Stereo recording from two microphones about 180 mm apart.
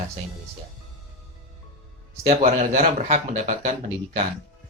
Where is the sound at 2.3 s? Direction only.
40° right (ahead or behind).